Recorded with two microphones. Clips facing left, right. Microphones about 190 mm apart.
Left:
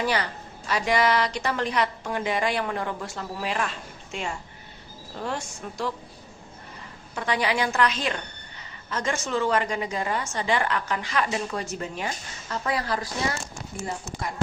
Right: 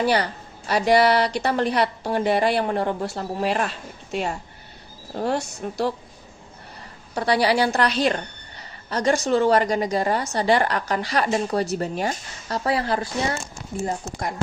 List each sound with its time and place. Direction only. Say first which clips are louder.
0.0 s a woman's voice: right 5 dB; 35° right (ahead or behind)
7.1 s a woman's voice: right 6 dB; 35° right (ahead or behind)
13.8 s speech: right 5 dB; 45° right (ahead or behind)